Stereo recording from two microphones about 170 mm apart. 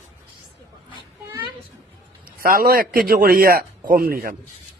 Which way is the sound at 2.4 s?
60° right (ahead or behind).